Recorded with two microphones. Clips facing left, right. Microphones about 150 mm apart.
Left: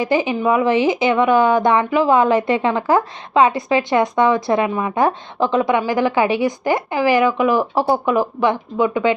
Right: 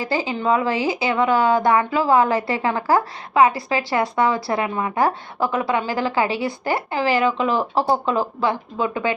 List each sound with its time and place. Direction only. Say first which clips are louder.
0.0 s a woman's voice: left 5 dB; 20° left (ahead or behind)